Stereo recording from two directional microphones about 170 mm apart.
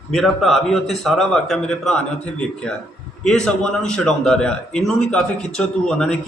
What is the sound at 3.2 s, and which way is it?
A man's voice, 5° left (ahead or behind).